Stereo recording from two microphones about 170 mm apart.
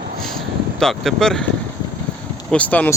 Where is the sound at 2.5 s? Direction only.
10° left (ahead or behind).